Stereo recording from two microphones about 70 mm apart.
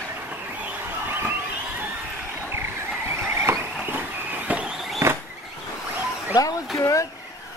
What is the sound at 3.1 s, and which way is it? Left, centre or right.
Vehicle, right.